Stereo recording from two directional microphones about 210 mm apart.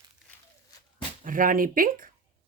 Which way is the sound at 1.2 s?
40° right (ahead or behind).